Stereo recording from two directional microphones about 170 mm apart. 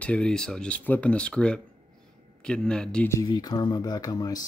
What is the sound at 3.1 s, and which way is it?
Speech, 20° left (ahead or behind).